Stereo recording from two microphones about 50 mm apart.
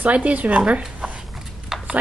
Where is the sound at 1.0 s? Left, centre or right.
Centre.